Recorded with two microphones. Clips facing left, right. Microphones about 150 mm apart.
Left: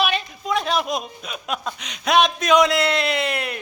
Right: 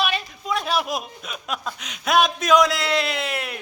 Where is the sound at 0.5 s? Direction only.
5° right (ahead or behind).